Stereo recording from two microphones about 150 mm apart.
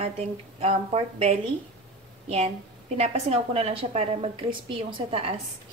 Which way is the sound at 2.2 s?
45° right (ahead or behind).